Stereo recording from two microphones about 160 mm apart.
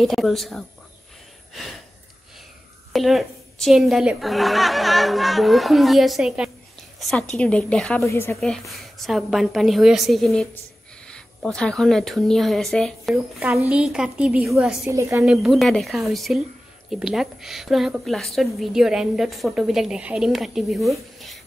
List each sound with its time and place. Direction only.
0.0 s a woman's voice: centre (ahead or behind)
1.5 s gasp: centre (ahead or behind)
2.9 s a woman's voice: centre (ahead or behind)
8.0 s a woman's voice: 15° left (ahead or behind)
8.4 s a woman's voice: centre (ahead or behind)
14.9 s a woman's voice: 20° right (ahead or behind)
15.2 s a woman's voice: centre (ahead or behind)